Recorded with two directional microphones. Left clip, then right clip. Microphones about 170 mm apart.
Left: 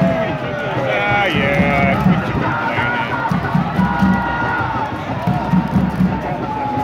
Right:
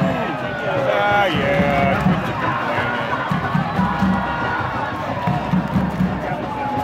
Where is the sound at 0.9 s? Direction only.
35° right (ahead or behind).